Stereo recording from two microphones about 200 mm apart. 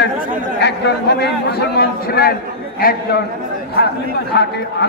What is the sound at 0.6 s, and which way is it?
A man's voice, 55° left (ahead or behind).